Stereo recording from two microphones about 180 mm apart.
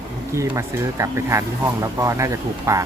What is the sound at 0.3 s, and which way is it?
Speech, 15° right (ahead or behind).